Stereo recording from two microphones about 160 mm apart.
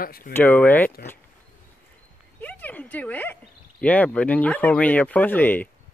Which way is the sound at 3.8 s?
10° left (ahead or behind).